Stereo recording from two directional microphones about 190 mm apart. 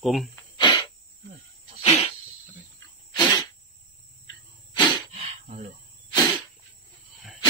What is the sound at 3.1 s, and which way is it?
Sneeze, 25° left (ahead or behind).